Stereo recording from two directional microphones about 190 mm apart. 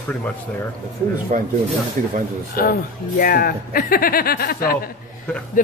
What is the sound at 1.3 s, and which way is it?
Speech, 40° right (ahead or behind).